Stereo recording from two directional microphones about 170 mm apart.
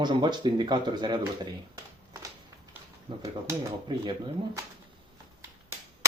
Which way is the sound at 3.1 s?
25° right (ahead or behind).